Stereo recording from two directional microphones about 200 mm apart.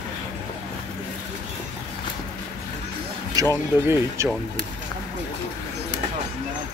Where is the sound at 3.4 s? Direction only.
15° right (ahead or behind).